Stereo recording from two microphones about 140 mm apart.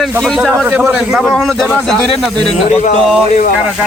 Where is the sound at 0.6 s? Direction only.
15° right (ahead or behind).